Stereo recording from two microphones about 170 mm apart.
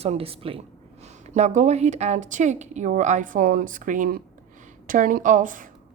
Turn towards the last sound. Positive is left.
turn(degrees=-50)  # may be behind; listen again after turning